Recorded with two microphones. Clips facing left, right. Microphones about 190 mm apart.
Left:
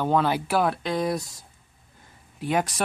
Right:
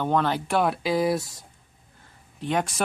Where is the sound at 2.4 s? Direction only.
5° left (ahead or behind).